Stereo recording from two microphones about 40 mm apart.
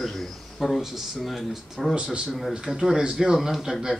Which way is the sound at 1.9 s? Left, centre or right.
Right.